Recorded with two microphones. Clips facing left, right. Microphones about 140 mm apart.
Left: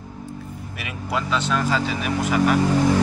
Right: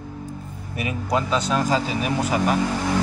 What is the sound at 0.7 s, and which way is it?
Speech, 40° right (ahead or behind).